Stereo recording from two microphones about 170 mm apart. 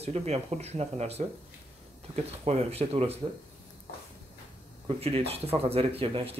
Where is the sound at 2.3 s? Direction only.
35° right (ahead or behind).